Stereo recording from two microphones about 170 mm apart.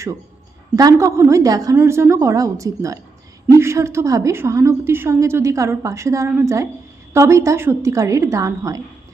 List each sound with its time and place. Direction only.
0.8 s a woman's voice: 20° right (ahead or behind)